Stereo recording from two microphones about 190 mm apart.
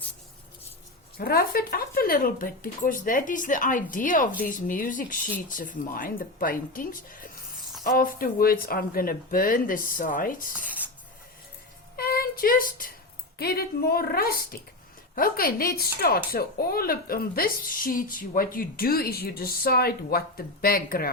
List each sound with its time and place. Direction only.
1.2 s speech: 55° left (ahead or behind)
11.9 s a sound: 55° left (ahead or behind)
13.4 s speech: 55° left (ahead or behind)